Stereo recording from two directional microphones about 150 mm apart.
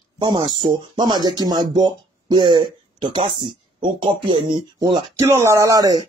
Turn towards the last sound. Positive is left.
turn(degrees=-25)  # may be behind; listen again after turning